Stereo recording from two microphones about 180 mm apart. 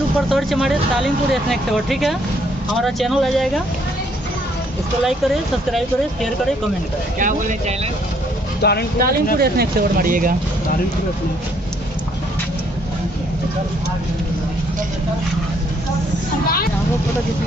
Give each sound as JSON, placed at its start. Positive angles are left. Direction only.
{"t": 0.3, "sound": "speech", "side_deg": 0}
{"t": 5.0, "sound": "speech", "side_deg": 0}
{"t": 7.2, "sound": "speech", "side_deg": -45}
{"t": 8.6, "sound": "speech", "side_deg": 65}
{"t": 9.0, "sound": "speech", "side_deg": -60}